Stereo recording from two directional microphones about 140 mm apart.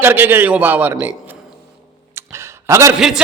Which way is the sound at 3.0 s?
5° right (ahead or behind).